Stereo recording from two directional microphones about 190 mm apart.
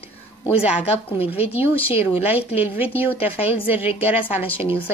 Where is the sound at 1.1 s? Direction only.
30° left (ahead or behind).